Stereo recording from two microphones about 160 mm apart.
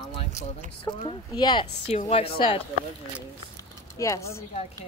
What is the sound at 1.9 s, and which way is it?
Speech, 40° left (ahead or behind).